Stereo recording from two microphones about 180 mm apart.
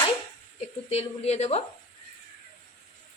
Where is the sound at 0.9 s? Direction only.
35° left (ahead or behind).